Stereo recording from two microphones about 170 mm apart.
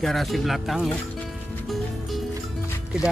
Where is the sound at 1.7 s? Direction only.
Centre (ahead or behind).